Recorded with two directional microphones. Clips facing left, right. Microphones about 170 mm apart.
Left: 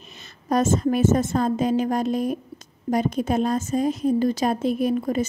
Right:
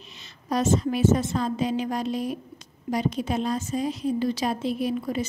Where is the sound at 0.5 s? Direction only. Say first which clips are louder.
Left 3 dB; 50° left (ahead or behind).